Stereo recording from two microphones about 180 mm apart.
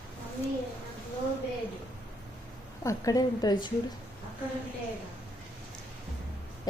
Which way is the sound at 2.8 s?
20° left (ahead or behind).